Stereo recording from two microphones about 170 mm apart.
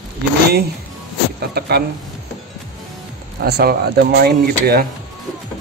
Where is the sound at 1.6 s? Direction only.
70° right (ahead or behind).